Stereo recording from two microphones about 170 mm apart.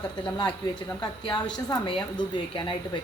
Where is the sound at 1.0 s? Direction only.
25° left (ahead or behind).